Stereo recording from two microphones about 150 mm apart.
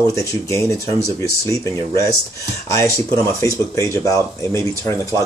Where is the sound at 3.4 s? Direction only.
20° left (ahead or behind).